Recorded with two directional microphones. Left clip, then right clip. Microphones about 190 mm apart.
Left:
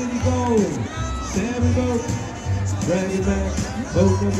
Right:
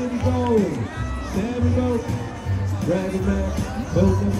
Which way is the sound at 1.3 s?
25° left (ahead or behind).